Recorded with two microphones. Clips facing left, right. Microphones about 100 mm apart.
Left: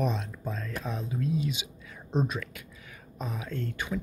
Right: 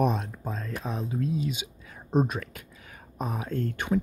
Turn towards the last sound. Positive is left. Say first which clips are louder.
# right 6 dB
turn(degrees=-45)  # may be behind; listen again after turning